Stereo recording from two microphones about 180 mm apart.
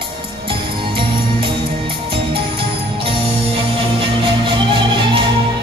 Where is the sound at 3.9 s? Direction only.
30° right (ahead or behind).